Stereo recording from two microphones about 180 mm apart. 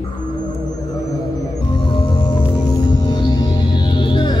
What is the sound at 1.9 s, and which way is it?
Music, 25° left (ahead or behind).